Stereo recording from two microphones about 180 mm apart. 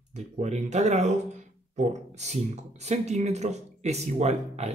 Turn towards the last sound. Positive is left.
turn(degrees=-35)  # may be behind; listen again after turning